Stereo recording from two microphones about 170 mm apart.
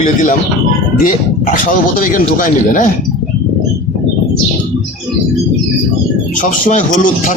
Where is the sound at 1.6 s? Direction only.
50° left (ahead or behind).